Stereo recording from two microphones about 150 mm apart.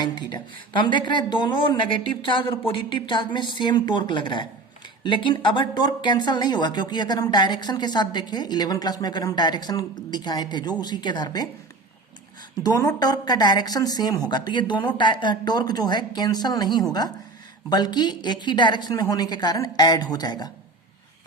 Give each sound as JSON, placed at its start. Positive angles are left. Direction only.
{"t": 0.0, "sound": "a woman's voice", "side_deg": 30}
{"t": 12.6, "sound": "a woman's voice", "side_deg": 25}